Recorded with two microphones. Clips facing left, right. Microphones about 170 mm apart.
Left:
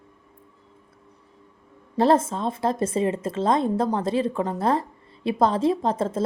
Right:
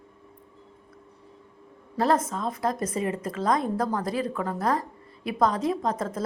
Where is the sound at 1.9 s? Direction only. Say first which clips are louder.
Left 5 dB; 25° left (ahead or behind).